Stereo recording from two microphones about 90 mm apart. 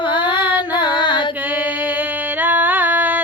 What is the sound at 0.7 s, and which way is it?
Female singing, 65° left (ahead or behind).